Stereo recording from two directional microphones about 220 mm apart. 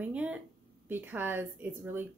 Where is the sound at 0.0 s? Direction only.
5° right (ahead or behind).